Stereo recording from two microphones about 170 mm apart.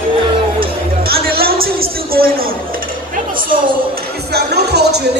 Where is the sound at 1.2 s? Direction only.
65° right (ahead or behind).